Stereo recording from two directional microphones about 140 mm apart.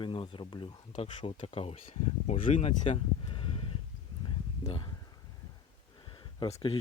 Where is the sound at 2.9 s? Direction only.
40° left (ahead or behind).